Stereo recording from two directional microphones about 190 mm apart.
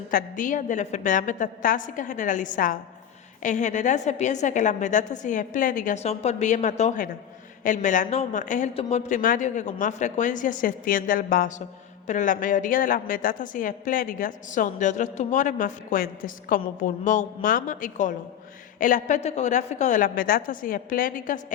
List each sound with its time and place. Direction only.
0.1 s a woman's voice: 45° left (ahead or behind)